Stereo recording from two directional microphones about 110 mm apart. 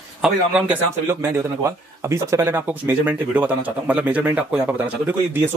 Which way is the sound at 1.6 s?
25° right (ahead or behind).